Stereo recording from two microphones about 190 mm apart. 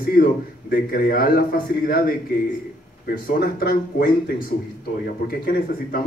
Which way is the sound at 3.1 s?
50° left (ahead or behind).